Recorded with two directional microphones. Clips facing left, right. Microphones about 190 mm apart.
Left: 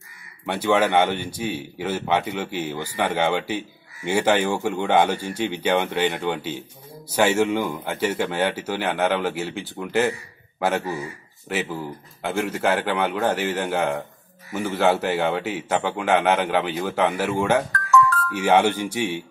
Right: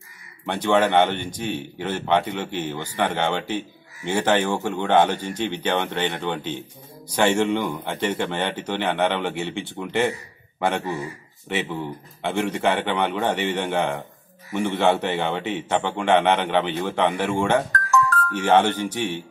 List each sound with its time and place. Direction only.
0.5 s a man's voice: 10° left (ahead or behind)
11.4 s a man's voice: 5° left (ahead or behind)
17.7 s music: 45° right (ahead or behind)
18.3 s speech: 10° left (ahead or behind)